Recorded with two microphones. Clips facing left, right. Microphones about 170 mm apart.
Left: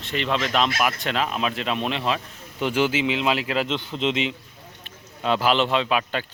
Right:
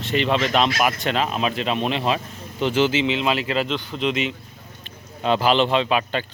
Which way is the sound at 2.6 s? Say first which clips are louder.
Right 2 dB; 10° left (ahead or behind).